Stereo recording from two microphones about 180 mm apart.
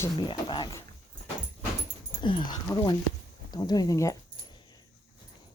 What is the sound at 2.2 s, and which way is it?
Dog, 25° left (ahead or behind).